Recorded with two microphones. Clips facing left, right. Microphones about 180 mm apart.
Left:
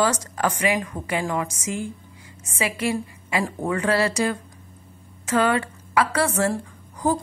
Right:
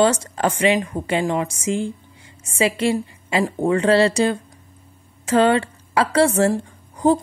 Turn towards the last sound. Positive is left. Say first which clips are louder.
# right 6 dB
turn(degrees=-30)  # may be behind; listen again after turning